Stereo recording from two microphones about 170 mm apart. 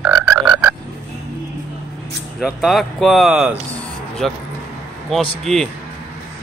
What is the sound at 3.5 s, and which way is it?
Music, 5° left (ahead or behind).